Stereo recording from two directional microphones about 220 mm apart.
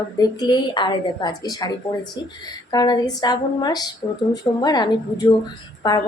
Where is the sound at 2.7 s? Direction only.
20° left (ahead or behind).